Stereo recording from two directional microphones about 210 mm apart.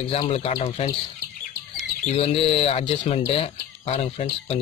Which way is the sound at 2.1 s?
25° left (ahead or behind).